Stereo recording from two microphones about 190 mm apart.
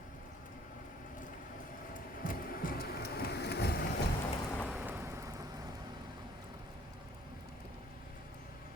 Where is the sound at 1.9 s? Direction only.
45° left (ahead or behind).